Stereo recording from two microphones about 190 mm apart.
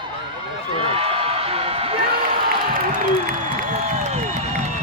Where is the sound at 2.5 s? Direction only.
45° right (ahead or behind).